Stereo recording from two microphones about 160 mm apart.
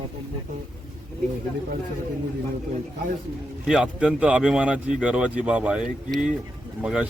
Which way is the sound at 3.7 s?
5° right (ahead or behind).